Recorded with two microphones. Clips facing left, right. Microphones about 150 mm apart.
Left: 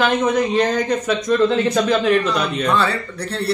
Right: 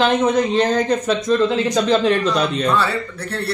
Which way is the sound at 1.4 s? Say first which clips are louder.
Left 1 dB; 15° right (ahead or behind).